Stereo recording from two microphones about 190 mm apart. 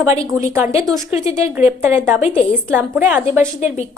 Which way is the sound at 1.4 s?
15° right (ahead or behind).